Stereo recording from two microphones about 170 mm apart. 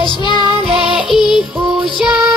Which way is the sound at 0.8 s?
Centre (ahead or behind).